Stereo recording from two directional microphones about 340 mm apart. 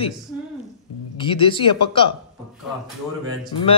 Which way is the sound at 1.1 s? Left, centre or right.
Centre.